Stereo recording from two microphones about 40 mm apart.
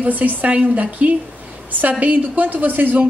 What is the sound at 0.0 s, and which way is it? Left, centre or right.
A woman's voice, right.